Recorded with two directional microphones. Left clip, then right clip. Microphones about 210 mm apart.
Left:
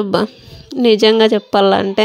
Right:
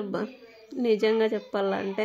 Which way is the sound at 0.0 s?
40° left (ahead or behind).